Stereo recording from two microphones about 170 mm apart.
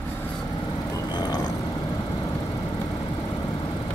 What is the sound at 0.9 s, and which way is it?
Vehicle, 25° left (ahead or behind).